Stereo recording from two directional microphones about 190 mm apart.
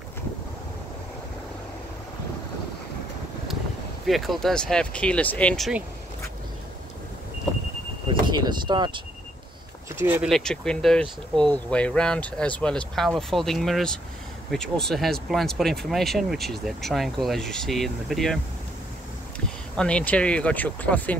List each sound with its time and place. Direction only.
4.0 s speech: centre (ahead or behind)
8.1 s speech: 25° right (ahead or behind)
9.9 s speech: 10° right (ahead or behind)
10.3 s speech: 5° left (ahead or behind)
19.8 s speech: 5° left (ahead or behind)